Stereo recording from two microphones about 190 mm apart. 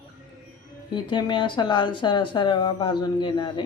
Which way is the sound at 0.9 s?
25° left (ahead or behind).